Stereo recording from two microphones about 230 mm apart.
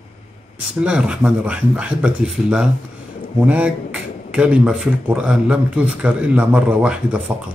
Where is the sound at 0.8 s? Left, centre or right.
Centre.